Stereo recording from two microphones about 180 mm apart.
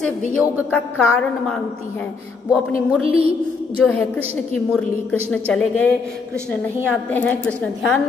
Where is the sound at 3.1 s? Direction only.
35° right (ahead or behind).